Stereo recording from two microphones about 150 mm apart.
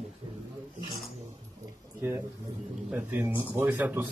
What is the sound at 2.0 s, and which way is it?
Speech, 15° right (ahead or behind).